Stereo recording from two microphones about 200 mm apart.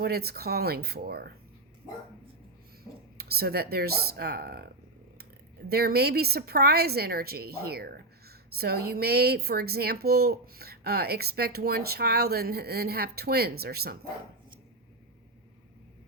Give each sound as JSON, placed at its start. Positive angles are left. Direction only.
{"t": 0.0, "sound": "a woman's voice", "side_deg": -50}
{"t": 3.2, "sound": "a woman's voice", "side_deg": -50}
{"t": 5.6, "sound": "a woman's voice", "side_deg": -50}